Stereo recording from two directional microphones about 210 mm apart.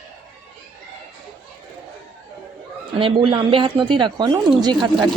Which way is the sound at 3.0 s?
25° right (ahead or behind).